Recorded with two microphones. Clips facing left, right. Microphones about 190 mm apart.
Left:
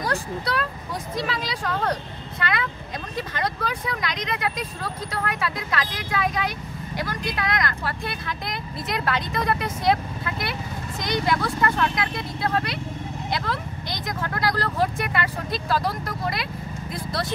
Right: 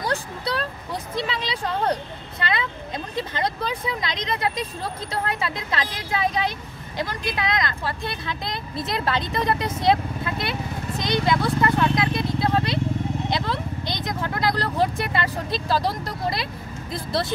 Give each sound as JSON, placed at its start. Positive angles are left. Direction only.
{"t": 0.0, "sound": "vehicle", "side_deg": -25}
{"t": 1.1, "sound": "speech", "side_deg": -25}